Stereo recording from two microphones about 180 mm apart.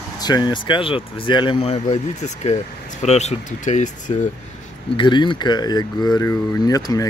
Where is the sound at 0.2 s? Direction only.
25° left (ahead or behind); by 3.9 s 40° left (ahead or behind).